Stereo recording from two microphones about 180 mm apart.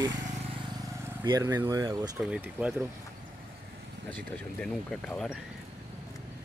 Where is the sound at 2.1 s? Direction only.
5° right (ahead or behind).